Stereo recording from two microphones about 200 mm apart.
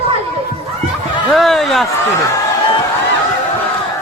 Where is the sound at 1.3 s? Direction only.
Centre (ahead or behind).